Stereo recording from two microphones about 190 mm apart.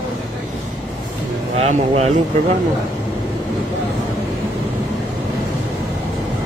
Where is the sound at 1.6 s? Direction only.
35° right (ahead or behind).